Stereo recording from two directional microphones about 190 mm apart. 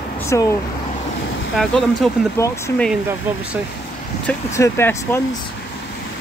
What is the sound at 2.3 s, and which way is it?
Speech, 15° left (ahead or behind).